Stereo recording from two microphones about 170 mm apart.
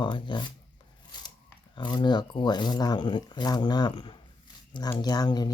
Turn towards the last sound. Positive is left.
turn(degrees=25)  # may be behind; listen again after turning